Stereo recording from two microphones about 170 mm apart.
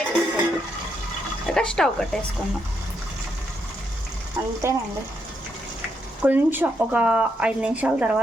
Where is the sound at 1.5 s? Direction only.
5° left (ahead or behind).